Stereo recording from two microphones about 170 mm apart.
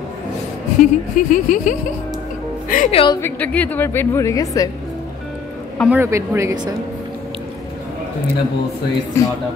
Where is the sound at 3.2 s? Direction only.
10° left (ahead or behind).